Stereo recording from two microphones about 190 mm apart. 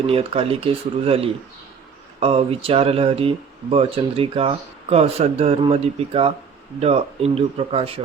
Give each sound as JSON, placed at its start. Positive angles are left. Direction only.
{"t": 0.1, "sound": "speech", "side_deg": -30}